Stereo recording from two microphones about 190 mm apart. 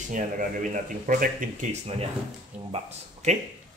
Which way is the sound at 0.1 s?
45° right (ahead or behind).